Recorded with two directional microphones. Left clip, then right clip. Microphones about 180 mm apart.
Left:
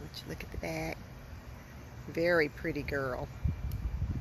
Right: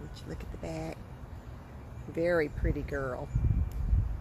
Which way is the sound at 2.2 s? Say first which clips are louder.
Even; 20° left (ahead or behind).